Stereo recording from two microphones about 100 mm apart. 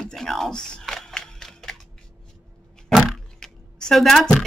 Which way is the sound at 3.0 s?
Centre (ahead or behind).